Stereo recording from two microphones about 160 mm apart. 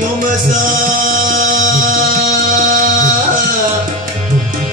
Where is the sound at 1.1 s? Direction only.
55° right (ahead or behind).